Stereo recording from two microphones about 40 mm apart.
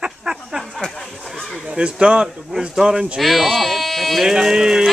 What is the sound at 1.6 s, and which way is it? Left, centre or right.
Speech, right.